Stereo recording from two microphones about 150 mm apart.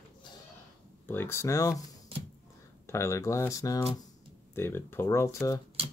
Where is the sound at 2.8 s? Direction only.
20° left (ahead or behind).